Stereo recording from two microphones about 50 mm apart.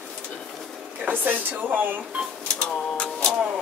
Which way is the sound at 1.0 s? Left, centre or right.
Right.